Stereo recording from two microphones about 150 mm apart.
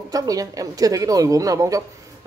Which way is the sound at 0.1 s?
25° right (ahead or behind).